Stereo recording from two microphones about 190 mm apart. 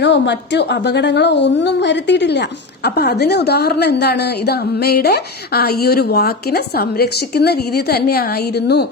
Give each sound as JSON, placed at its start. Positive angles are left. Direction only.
{"t": 0.0, "sound": "a woman's voice", "side_deg": 65}